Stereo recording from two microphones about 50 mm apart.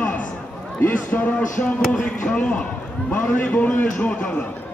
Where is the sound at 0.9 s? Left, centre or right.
Left.